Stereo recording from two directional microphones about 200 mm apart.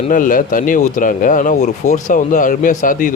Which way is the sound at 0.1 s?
45° left (ahead or behind).